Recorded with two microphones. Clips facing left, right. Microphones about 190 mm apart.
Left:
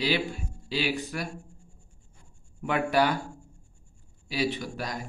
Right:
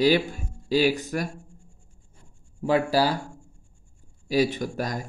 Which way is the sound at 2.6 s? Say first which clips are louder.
Right 3 dB; 30° right (ahead or behind).